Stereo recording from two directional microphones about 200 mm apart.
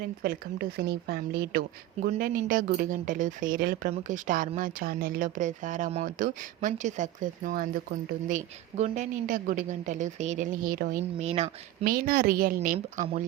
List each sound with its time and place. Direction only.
0.0 s speech: 50° right (ahead or behind)
11.0 s speech: 30° right (ahead or behind)
11.8 s speech: 45° right (ahead or behind)